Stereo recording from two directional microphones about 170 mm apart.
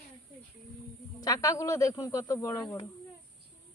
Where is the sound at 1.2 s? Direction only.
20° left (ahead or behind).